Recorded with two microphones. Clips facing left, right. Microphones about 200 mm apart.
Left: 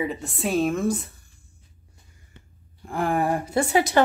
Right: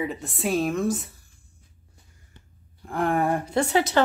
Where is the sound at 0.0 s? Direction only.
Centre (ahead or behind).